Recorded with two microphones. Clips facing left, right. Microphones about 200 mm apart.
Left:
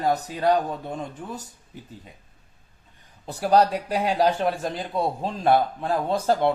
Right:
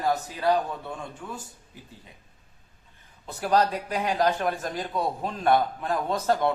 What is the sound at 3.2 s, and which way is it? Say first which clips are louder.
A man's voice: left 4 dB; 35° left (ahead or behind).